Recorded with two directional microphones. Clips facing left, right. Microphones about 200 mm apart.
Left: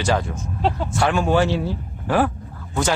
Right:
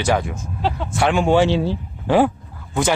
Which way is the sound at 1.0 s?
20° right (ahead or behind).